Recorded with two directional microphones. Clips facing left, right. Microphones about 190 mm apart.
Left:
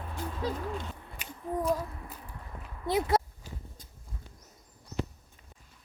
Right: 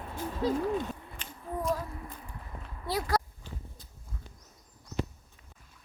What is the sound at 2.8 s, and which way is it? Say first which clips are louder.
Speech: left 4 dB; 20° left (ahead or behind).